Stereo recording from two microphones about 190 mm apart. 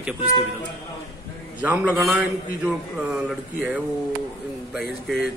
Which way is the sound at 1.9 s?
10° right (ahead or behind).